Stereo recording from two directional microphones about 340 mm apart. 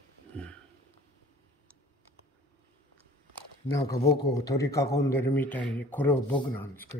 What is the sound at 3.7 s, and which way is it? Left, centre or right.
A man's voice, centre.